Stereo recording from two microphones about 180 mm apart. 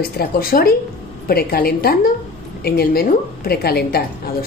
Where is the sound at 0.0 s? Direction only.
55° left (ahead or behind).